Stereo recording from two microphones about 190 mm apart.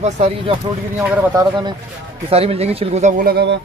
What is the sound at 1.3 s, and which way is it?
Speech, 25° right (ahead or behind).